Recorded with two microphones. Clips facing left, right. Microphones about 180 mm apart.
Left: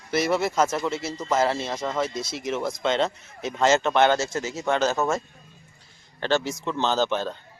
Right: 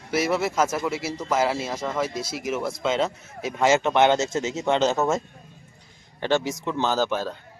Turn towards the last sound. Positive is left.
turn(degrees=-10)  # may be behind; listen again after turning